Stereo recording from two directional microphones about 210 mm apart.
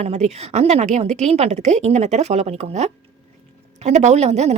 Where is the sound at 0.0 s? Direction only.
30° right (ahead or behind).